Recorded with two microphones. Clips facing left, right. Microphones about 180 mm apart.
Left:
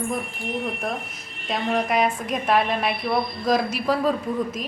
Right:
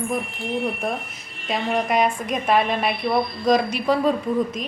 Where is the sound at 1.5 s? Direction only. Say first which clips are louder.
Right 1 dB; centre (ahead or behind).